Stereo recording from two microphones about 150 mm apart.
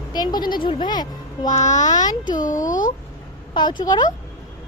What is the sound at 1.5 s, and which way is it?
Speech, 50° left (ahead or behind).